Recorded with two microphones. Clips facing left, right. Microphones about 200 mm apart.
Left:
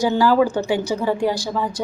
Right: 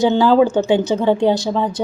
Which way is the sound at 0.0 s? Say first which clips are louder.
Right 4 dB; 20° right (ahead or behind).